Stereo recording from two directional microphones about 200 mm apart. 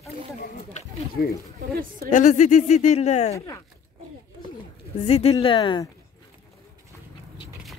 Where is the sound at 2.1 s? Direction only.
40° left (ahead or behind).